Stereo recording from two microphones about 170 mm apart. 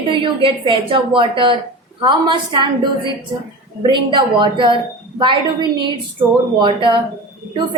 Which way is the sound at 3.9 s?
30° right (ahead or behind).